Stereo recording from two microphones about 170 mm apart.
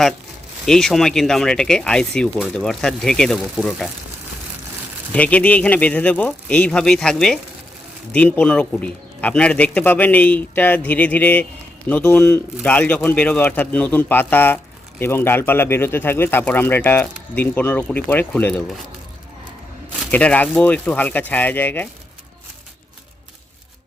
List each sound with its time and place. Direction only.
0.6 s speech: centre (ahead or behind)
5.1 s a man's voice: 10° left (ahead or behind)
20.1 s a man's voice: 10° left (ahead or behind)